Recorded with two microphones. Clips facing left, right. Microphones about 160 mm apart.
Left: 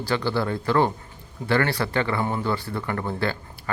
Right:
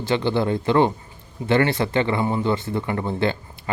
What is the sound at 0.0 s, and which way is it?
Speech, 20° right (ahead or behind).